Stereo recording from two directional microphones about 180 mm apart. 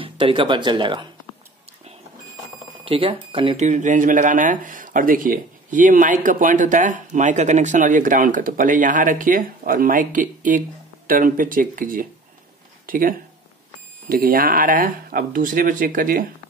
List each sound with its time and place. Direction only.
0.0 s speech: 30° right (ahead or behind)
2.8 s speech: 30° right (ahead or behind)
3.6 s speech: 45° right (ahead or behind)